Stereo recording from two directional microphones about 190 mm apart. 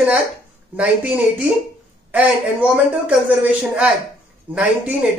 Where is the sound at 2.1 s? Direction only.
5° right (ahead or behind).